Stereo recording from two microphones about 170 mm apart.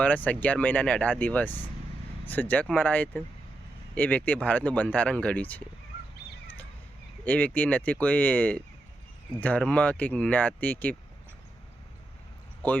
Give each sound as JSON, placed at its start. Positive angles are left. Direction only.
{"t": 0.0, "sound": "speech", "side_deg": 10}
{"t": 7.3, "sound": "speech", "side_deg": 10}